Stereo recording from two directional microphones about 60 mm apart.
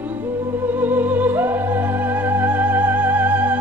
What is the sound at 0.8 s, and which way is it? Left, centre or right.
Music, right.